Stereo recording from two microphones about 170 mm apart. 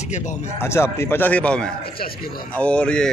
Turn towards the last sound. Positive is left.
turn(degrees=5)  # may be behind; listen again after turning